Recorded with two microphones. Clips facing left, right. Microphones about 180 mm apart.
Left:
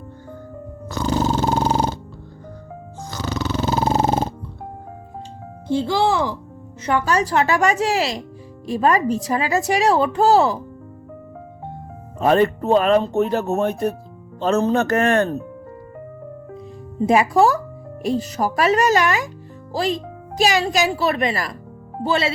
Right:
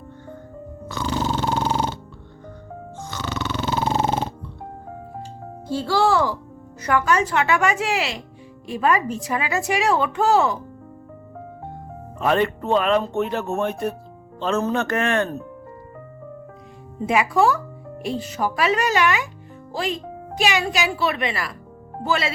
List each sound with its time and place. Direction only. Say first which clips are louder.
0.9 s a sound: left 4 dB; 40° left (ahead or behind)
3.1 s burping: left 3 dB; 40° left (ahead or behind)
5.6 s a child's voice: left 1 dB; 20° left (ahead or behind)
6.8 s speech: left 1 dB; 30° left (ahead or behind)
12.2 s speech: left 4 dB; 40° left (ahead or behind)
17.1 s speech: left 3 dB; 40° left (ahead or behind)
22.0 s a child's voice: left 3 dB; 30° left (ahead or behind)